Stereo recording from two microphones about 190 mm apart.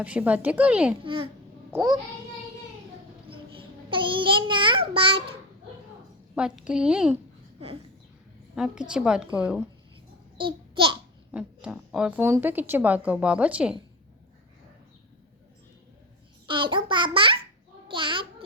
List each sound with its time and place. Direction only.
0.0 s a woman's voice: 5° right (ahead or behind)
1.0 s a child's voice: 30° right (ahead or behind)
3.2 s a child's voice: 25° right (ahead or behind)
6.3 s a woman's voice: 5° right (ahead or behind)
8.5 s a woman's voice: centre (ahead or behind)
10.3 s babbling: 25° right (ahead or behind)
11.3 s a woman's voice: 5° right (ahead or behind)
16.5 s a child's voice: 25° right (ahead or behind)
17.8 s babbling: 25° right (ahead or behind)